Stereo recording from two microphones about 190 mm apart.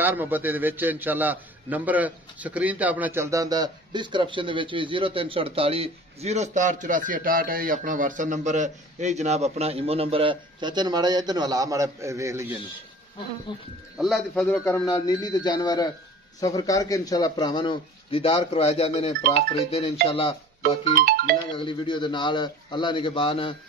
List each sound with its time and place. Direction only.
0.0 s a man's voice: 10° right (ahead or behind)
13.5 s speech: 25° left (ahead or behind)
13.9 s speech: centre (ahead or behind); by 20.3 s 30° left (ahead or behind)
20.9 s ringtone: 55° right (ahead or behind)
21.5 s speech: 25° left (ahead or behind)